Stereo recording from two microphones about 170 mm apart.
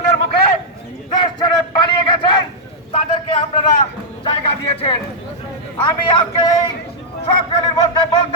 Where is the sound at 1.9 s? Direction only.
30° left (ahead or behind).